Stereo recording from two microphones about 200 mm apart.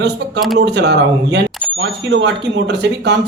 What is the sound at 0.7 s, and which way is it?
Speech, 60° right (ahead or behind).